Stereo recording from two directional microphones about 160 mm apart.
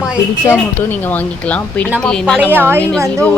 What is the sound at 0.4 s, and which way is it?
Speech, 15° left (ahead or behind).